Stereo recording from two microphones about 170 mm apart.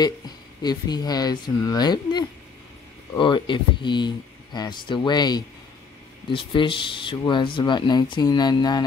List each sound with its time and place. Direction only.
0.6 s speech: 25° left (ahead or behind)